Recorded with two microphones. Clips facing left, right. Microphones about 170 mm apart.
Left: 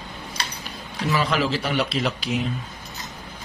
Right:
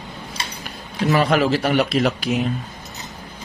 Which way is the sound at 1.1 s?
55° right (ahead or behind).